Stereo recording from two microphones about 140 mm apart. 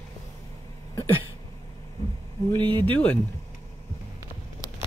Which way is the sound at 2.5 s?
35° right (ahead or behind).